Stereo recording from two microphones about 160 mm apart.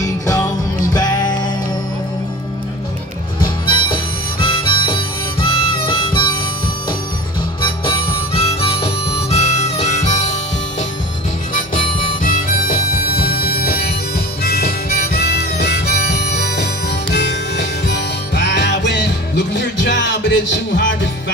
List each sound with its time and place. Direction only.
0.0 s music: 20° left (ahead or behind)
3.6 s harmonica: 30° left (ahead or behind)
7.6 s harmonica: 30° left (ahead or behind)
11.7 s harmonica: 60° left (ahead or behind); by 16.6 s 90° left
17.1 s music: 90° left